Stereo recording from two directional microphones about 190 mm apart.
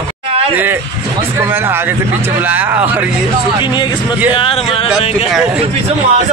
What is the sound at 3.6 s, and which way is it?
Speech, 25° left (ahead or behind).